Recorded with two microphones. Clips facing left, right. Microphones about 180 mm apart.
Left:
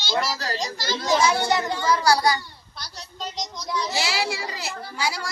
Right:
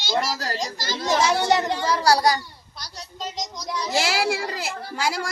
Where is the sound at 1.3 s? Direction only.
35° right (ahead or behind).